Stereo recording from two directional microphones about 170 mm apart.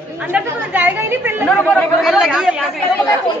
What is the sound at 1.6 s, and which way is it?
Speech, centre (ahead or behind).